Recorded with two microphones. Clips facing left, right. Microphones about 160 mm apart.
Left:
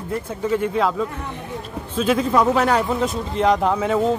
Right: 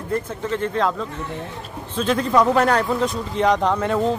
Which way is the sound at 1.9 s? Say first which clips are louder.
Even; 5° left (ahead or behind).